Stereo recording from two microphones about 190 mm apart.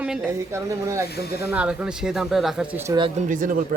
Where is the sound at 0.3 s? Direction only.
15° right (ahead or behind).